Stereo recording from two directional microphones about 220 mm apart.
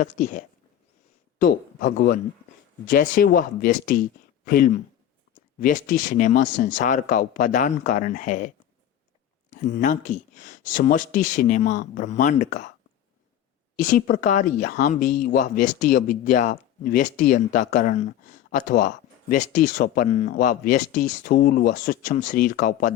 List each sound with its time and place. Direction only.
0.0 s speech: 35° left (ahead or behind)
9.5 s speech: 35° left (ahead or behind)
13.7 s speech: 40° left (ahead or behind)